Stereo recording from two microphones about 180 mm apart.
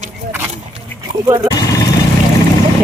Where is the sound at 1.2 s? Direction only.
20° right (ahead or behind).